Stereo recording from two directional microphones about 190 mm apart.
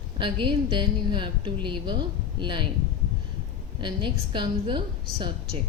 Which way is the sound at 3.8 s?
25° right (ahead or behind).